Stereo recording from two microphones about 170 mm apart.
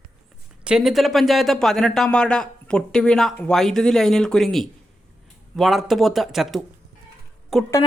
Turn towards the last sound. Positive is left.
turn(degrees=0)  # may be behind; listen again after turning